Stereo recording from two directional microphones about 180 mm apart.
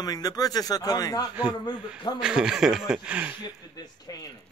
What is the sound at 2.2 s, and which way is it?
Speech, 5° right (ahead or behind).